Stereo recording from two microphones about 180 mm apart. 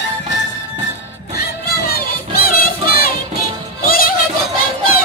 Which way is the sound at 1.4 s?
60° left (ahead or behind).